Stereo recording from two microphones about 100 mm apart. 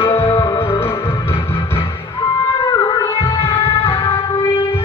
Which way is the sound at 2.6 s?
45° left (ahead or behind).